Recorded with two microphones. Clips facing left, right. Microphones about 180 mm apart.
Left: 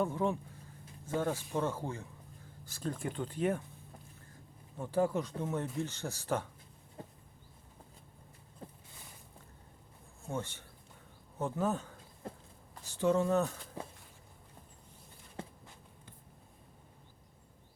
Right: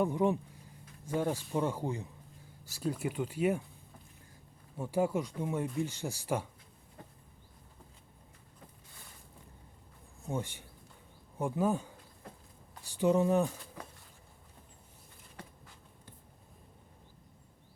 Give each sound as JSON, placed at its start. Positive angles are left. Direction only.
{"t": 0.0, "sound": "speech", "side_deg": -15}
{"t": 4.8, "sound": "speech", "side_deg": -10}
{"t": 8.6, "sound": "a sound", "side_deg": 30}
{"t": 10.2, "sound": "speech", "side_deg": -15}